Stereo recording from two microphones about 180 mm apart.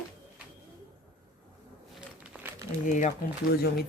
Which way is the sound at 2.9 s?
45° left (ahead or behind).